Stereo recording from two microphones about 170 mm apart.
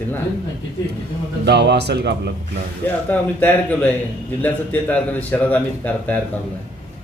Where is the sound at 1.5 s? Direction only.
85° right.